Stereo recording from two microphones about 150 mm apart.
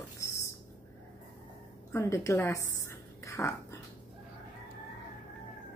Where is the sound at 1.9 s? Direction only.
20° left (ahead or behind).